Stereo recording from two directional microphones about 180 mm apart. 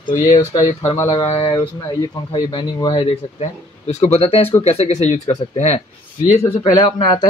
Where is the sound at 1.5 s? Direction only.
20° left (ahead or behind).